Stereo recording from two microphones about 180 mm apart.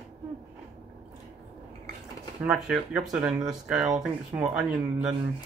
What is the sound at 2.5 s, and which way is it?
Speech, centre (ahead or behind).